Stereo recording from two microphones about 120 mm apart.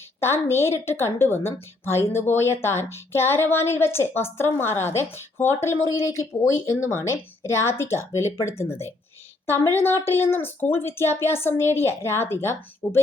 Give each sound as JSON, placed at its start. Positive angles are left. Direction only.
{"t": 0.2, "sound": "a woman's voice", "side_deg": 20}